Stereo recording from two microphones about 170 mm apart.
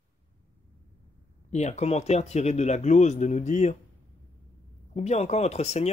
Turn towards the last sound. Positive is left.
turn(degrees=40)  # may be behind; listen again after turning